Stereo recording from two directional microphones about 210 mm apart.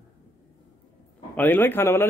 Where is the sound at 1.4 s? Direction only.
10° left (ahead or behind).